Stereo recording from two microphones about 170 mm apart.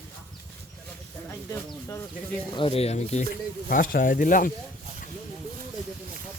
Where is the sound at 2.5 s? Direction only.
30° left (ahead or behind).